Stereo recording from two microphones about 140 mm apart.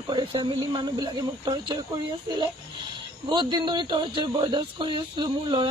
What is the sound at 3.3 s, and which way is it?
Speech, 35° right (ahead or behind).